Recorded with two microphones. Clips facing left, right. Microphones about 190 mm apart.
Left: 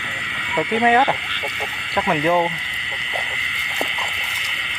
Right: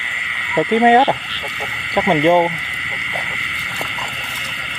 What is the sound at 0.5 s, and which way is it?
Speech, 25° right (ahead or behind).